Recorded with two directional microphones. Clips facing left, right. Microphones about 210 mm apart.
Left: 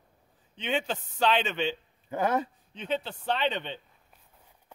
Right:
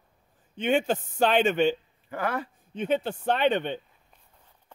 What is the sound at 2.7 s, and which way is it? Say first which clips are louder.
A man's voice: right 6 dB; 50° right (ahead or behind).